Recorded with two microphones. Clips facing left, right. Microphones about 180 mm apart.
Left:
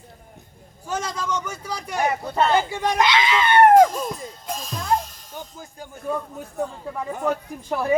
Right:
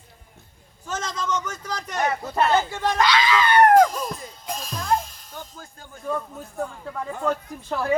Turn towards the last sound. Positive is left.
turn(degrees=15)  # may be behind; listen again after turning